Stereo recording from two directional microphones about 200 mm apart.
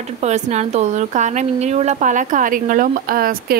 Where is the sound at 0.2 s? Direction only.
35° right (ahead or behind).